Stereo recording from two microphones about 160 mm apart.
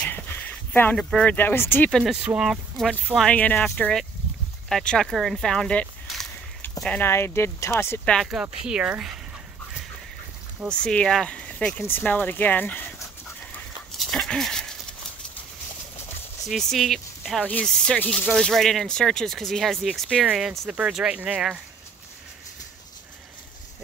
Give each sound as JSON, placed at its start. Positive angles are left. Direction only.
{"t": 0.0, "sound": "speech", "side_deg": 10}
{"t": 8.1, "sound": "speech", "side_deg": 0}
{"t": 10.7, "sound": "speech", "side_deg": 5}
{"t": 13.9, "sound": "dog", "side_deg": 0}
{"t": 16.4, "sound": "speech", "side_deg": 0}